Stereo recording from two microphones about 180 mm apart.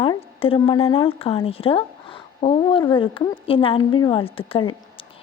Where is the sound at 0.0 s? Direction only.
30° left (ahead or behind).